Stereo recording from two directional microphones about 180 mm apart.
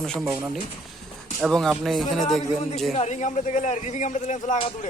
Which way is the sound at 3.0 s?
40° left (ahead or behind).